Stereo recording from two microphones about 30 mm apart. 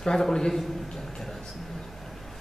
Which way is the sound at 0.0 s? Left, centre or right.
Left.